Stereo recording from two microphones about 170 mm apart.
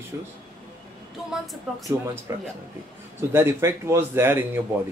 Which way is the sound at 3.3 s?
15° right (ahead or behind).